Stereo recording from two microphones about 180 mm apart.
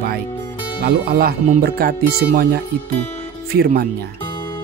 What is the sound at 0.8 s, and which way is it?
Speech, 60° right (ahead or behind).